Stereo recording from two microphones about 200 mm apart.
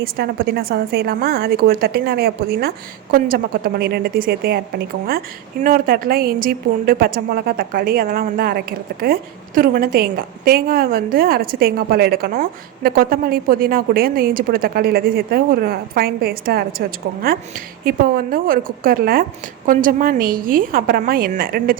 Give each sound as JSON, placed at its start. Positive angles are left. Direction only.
{"t": 0.0, "sound": "a woman's voice", "side_deg": -50}
{"t": 17.8, "sound": "a woman's voice", "side_deg": -45}